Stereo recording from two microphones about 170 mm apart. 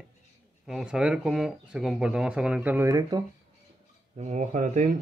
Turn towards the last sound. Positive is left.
turn(degrees=-45)  # may be behind; listen again after turning